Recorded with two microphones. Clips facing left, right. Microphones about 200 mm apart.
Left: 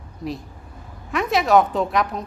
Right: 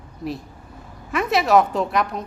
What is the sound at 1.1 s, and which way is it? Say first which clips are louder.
Speech: even; centre (ahead or behind).